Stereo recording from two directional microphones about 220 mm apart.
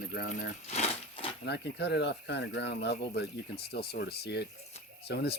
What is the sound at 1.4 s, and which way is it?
Speech, 50° left (ahead or behind).